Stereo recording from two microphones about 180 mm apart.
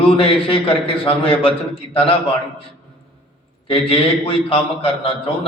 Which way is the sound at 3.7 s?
30° left (ahead or behind).